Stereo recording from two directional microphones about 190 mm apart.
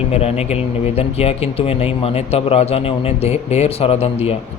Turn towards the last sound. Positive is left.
turn(degrees=30)  # may be behind; listen again after turning